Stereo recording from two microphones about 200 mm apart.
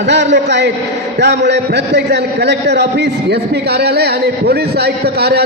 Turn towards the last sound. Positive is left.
turn(degrees=-55)  # may be behind; listen again after turning